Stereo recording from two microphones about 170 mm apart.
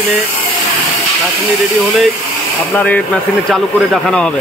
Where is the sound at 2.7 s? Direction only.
10° left (ahead or behind).